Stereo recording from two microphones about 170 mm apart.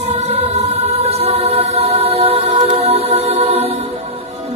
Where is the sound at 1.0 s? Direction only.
35° right (ahead or behind).